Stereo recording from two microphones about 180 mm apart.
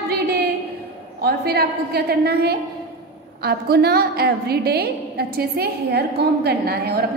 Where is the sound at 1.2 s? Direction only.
60° right (ahead or behind).